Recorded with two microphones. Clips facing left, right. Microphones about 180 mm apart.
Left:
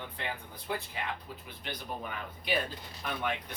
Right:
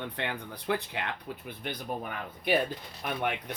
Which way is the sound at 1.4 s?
50° right (ahead or behind).